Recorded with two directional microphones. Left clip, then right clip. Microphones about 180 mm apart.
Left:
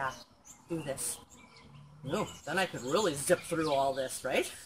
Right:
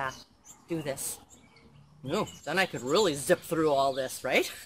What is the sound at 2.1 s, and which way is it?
Speech, 20° right (ahead or behind).